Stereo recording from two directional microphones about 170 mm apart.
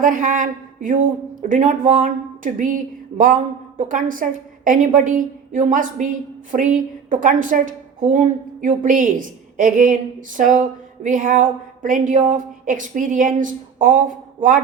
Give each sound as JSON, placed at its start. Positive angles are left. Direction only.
{"t": 0.0, "sound": "a woman's voice", "side_deg": -50}